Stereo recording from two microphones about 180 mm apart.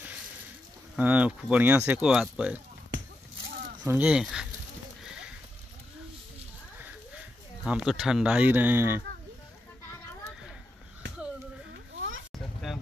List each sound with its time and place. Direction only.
0.9 s speech: 10° right (ahead or behind)
3.8 s speech: 10° right (ahead or behind)
7.6 s speech: 5° right (ahead or behind)
11.7 s a sound: 90° right